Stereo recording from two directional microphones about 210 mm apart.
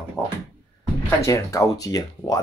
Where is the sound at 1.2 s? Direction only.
15° left (ahead or behind).